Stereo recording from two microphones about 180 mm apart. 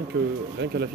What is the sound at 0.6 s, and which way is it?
Speech, 70° right (ahead or behind).